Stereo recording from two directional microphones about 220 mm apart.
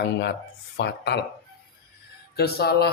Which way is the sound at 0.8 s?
50° left (ahead or behind).